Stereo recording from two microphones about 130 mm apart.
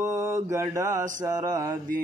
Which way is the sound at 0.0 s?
25° right (ahead or behind).